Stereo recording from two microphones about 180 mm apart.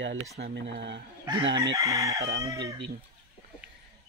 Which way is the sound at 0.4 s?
75° right (ahead or behind).